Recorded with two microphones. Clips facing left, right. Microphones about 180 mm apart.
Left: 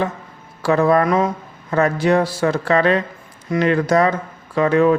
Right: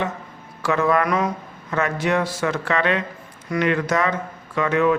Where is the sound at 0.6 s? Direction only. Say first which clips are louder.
Left 5 dB; 35° left (ahead or behind).